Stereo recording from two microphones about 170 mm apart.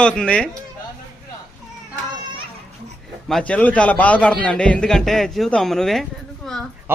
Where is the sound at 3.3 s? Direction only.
5° left (ahead or behind).